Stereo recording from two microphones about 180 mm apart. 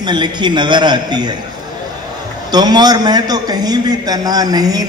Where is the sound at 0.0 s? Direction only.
25° right (ahead or behind).